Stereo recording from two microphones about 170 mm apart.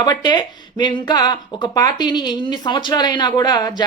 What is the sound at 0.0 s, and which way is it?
Speech, 25° left (ahead or behind).